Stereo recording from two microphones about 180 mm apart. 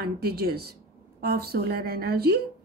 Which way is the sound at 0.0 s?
60° right (ahead or behind).